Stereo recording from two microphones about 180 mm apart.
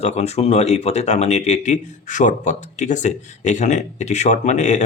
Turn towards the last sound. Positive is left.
turn(degrees=40)  # may be behind; listen again after turning